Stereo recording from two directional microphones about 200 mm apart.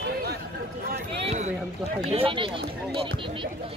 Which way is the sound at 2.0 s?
30° right (ahead or behind).